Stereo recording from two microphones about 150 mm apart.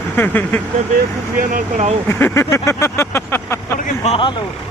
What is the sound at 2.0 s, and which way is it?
Vehicle, 15° left (ahead or behind).